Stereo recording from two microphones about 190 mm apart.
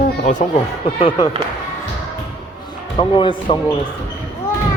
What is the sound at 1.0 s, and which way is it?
Speech, 25° left (ahead or behind).